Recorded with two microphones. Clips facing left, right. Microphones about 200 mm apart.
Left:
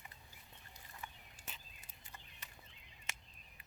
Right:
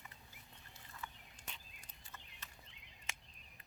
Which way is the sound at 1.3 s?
5° left (ahead or behind).